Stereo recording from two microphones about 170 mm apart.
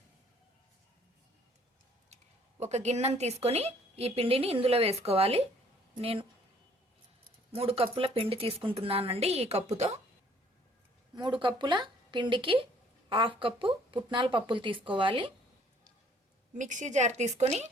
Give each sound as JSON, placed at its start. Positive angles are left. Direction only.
{"t": 2.6, "sound": "a woman's voice", "side_deg": -40}
{"t": 7.5, "sound": "a woman's voice", "side_deg": -35}
{"t": 11.1, "sound": "speech", "side_deg": -25}
{"t": 16.6, "sound": "a woman's voice", "side_deg": -45}